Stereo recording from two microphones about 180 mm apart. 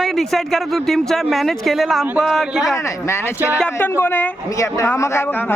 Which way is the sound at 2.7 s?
15° left (ahead or behind).